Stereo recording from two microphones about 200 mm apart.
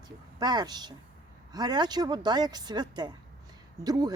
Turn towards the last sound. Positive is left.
turn(degrees=-20)  # may be behind; listen again after turning